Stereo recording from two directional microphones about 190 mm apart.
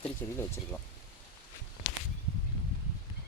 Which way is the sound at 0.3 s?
15° left (ahead or behind).